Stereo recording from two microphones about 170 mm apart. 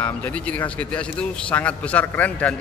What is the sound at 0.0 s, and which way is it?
Speech, 10° left (ahead or behind).